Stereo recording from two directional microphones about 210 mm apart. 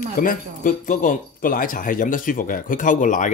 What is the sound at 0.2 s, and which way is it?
Speech, 40° left (ahead or behind).